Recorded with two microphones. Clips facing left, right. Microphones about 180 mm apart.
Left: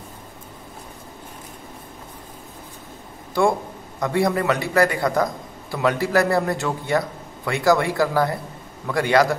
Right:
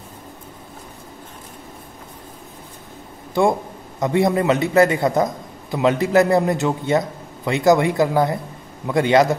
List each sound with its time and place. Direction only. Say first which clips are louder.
3.4 s a man's voice: right 2 dB; 20° right (ahead or behind)